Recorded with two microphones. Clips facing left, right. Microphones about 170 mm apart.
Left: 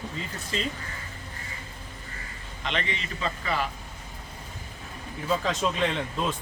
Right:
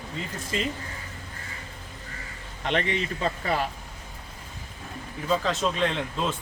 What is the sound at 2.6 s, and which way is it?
Speech, 55° right (ahead or behind).